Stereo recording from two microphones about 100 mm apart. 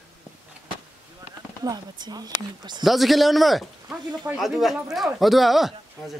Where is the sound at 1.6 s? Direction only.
45° right (ahead or behind).